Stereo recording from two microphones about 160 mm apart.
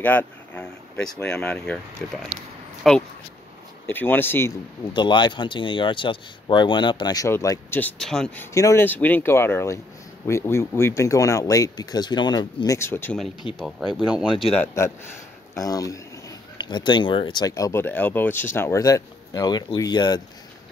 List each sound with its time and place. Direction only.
0.0 s speech: 10° left (ahead or behind)
2.8 s speech: centre (ahead or behind)
3.8 s speech: 10° left (ahead or behind)
4.9 s speech: 30° left (ahead or behind)
7.8 s speech: 5° left (ahead or behind)
8.5 s speech: 15° left (ahead or behind)
12.7 s speech: 15° left (ahead or behind)
13.6 s speech: centre (ahead or behind)
15.5 s speech: 20° left (ahead or behind)